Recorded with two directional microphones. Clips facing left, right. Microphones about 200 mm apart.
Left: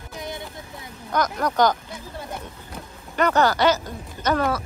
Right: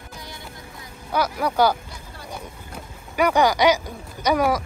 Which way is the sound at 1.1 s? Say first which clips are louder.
Even; 10° right (ahead or behind).